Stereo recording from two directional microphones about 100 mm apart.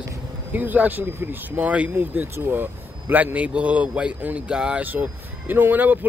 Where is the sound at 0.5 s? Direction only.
15° right (ahead or behind).